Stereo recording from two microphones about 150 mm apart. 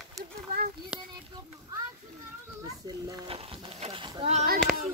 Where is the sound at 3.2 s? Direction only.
40° right (ahead or behind).